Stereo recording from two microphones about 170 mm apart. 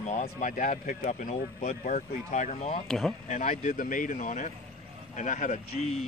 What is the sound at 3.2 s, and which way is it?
A man's voice, 45° left (ahead or behind).